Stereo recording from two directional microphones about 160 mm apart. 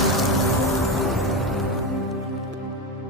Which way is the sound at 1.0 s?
Centre (ahead or behind).